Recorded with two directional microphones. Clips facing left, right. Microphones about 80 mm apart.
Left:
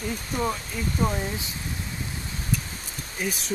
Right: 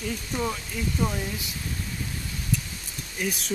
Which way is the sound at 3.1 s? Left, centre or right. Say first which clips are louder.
Even; centre.